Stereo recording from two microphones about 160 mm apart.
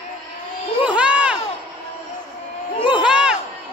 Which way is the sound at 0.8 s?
5° right (ahead or behind).